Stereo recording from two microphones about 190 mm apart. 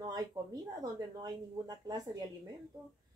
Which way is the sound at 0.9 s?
20° right (ahead or behind).